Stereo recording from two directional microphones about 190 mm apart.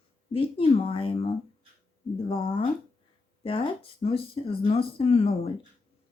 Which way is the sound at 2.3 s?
30° left (ahead or behind).